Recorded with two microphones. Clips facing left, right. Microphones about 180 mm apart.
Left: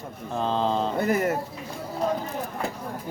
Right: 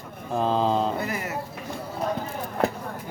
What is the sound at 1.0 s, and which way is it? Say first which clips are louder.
Speech: left 7 dB; 50° left (ahead or behind).